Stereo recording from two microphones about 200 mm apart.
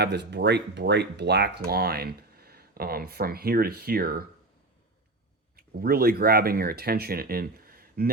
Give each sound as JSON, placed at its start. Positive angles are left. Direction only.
{"t": 0.0, "sound": "speech", "side_deg": -55}
{"t": 5.5, "sound": "speech", "side_deg": -50}